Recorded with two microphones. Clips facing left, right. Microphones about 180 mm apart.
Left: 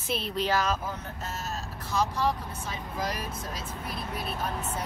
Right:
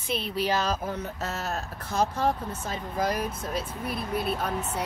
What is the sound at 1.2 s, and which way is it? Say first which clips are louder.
Speech: right 2 dB; 65° right (ahead or behind).